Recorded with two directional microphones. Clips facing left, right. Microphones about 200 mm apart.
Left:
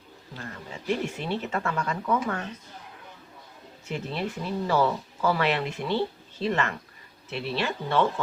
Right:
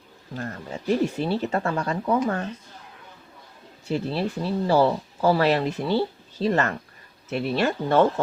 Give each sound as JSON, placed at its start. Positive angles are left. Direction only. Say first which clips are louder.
{"t": 0.3, "sound": "speech", "louder": "right 7 dB", "side_deg": -40}
{"t": 3.8, "sound": "speech", "louder": "right 6 dB", "side_deg": -35}